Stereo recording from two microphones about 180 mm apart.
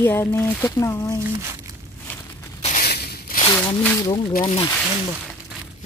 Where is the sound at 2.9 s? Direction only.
60° left (ahead or behind).